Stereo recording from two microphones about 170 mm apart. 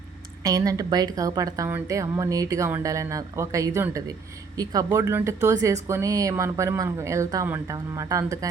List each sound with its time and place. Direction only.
0.4 s speech: 20° right (ahead or behind)